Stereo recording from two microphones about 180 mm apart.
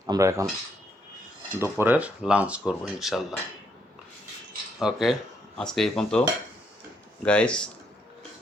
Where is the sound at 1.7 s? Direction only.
10° right (ahead or behind).